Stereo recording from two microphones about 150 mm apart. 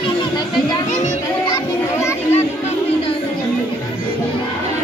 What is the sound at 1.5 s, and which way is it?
Children playing, 20° left (ahead or behind).